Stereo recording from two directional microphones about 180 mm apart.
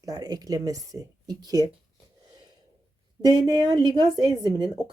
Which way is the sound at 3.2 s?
25° right (ahead or behind).